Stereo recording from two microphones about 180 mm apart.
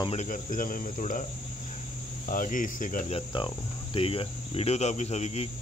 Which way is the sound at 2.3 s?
45° left (ahead or behind).